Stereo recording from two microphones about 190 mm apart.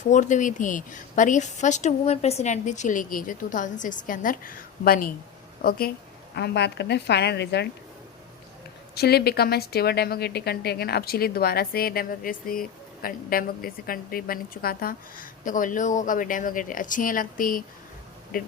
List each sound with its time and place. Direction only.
0.0 s a woman's voice: 40° left (ahead or behind)
6.3 s a woman's voice: 60° left (ahead or behind)
9.0 s a woman's voice: 55° left (ahead or behind)